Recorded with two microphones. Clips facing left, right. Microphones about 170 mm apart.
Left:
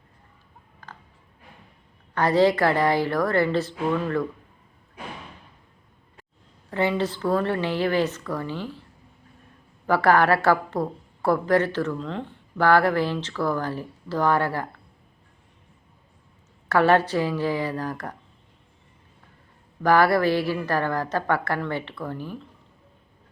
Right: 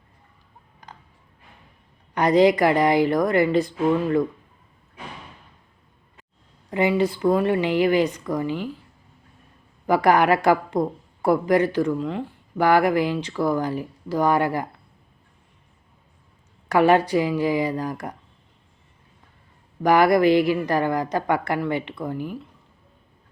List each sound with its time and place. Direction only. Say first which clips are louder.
0.8 s a sound: even; 15° right (ahead or behind)
2.1 s a woman's voice: right 3 dB; 15° right (ahead or behind)
6.7 s a woman's voice: right 3 dB; 15° right (ahead or behind)
9.8 s a woman's voice: right 1 dB; 15° right (ahead or behind)
16.6 s a woman's voice: right 2 dB; 15° right (ahead or behind)
19.8 s a woman's voice: right 2 dB; 15° right (ahead or behind)